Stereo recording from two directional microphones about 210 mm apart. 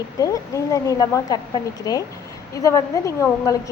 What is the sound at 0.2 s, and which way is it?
Speech, 15° left (ahead or behind).